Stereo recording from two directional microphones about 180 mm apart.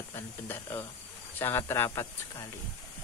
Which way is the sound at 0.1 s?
15° left (ahead or behind).